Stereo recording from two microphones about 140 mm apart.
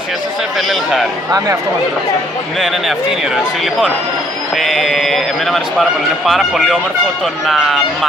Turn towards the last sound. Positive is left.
turn(degrees=0)  # may be behind; listen again after turning